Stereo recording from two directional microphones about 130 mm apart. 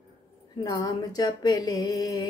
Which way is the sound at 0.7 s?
30° left (ahead or behind).